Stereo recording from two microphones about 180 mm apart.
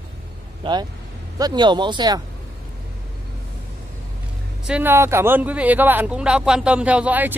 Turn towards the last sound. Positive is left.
turn(degrees=-10)  # may be behind; listen again after turning